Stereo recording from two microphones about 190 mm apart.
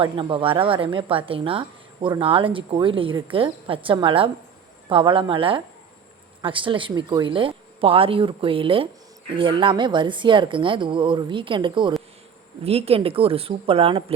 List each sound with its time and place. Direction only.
0.0 s a woman's voice: 25° right (ahead or behind)